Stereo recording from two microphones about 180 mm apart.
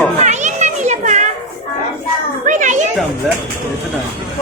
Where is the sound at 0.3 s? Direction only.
40° right (ahead or behind).